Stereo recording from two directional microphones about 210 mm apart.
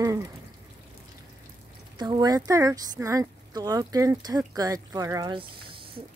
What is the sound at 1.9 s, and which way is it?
Speech, 20° right (ahead or behind).